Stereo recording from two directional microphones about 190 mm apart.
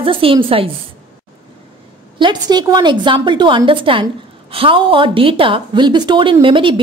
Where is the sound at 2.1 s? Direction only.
25° right (ahead or behind).